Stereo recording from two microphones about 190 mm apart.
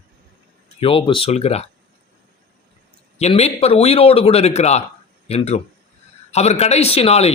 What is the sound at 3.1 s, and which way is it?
A man's voice, 35° left (ahead or behind).